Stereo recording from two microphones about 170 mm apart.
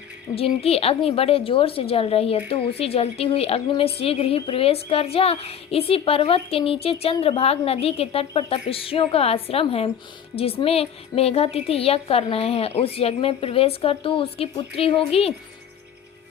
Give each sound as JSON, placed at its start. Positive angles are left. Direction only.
{"t": 0.3, "sound": "a woman's voice", "side_deg": 35}